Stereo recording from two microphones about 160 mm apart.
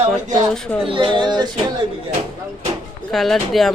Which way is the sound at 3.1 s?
Centre (ahead or behind).